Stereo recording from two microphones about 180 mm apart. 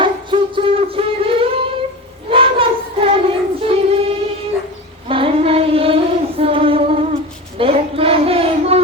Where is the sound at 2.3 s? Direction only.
30° right (ahead or behind).